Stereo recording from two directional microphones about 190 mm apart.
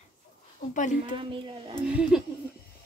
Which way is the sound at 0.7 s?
40° left (ahead or behind).